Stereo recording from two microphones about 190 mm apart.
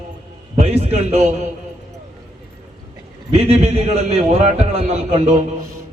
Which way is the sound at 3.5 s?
35° right (ahead or behind).